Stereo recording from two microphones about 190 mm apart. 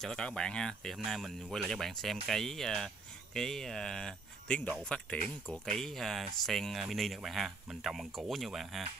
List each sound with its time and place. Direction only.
0.0 s speech: 5° left (ahead or behind)